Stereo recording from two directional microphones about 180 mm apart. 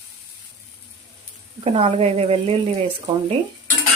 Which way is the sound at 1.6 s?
30° right (ahead or behind).